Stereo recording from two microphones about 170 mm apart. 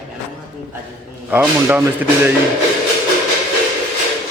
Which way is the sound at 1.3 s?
10° right (ahead or behind).